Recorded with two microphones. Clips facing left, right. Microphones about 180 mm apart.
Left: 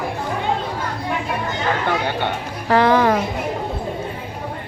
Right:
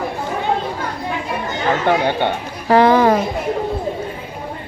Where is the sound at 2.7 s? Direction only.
20° right (ahead or behind).